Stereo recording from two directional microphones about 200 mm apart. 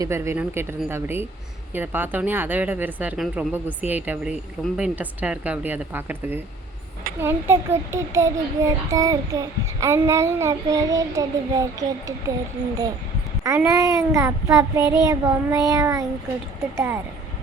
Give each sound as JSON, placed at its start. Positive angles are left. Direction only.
{"t": 0.0, "sound": "speech", "side_deg": -15}
{"t": 13.4, "sound": "speech", "side_deg": -15}
{"t": 14.8, "sound": "child singing", "side_deg": 20}
{"t": 15.0, "sound": "speech", "side_deg": -15}